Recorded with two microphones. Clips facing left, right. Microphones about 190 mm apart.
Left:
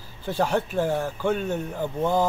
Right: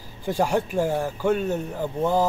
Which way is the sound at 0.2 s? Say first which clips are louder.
Right 1 dB; 10° right (ahead or behind).